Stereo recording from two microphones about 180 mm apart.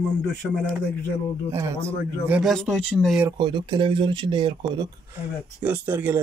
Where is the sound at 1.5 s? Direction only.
15° right (ahead or behind); by 3.3 s centre (ahead or behind).